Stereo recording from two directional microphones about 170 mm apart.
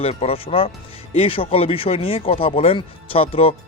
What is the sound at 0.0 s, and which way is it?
Speech, 35° left (ahead or behind).